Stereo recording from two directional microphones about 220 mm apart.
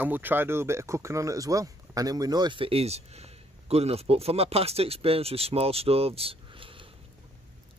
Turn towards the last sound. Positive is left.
turn(degrees=-25)  # may be behind; listen again after turning